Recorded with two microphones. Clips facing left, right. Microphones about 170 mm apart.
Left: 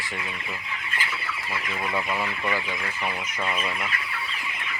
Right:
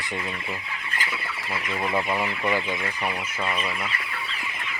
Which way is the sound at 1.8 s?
15° right (ahead or behind).